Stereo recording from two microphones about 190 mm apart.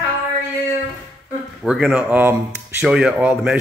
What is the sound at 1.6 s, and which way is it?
Speech, centre (ahead or behind).